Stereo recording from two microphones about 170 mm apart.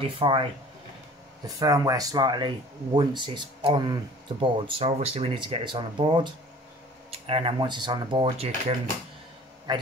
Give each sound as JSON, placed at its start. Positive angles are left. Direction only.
{"t": 0.0, "sound": "speech", "side_deg": -30}
{"t": 1.6, "sound": "speech", "side_deg": -20}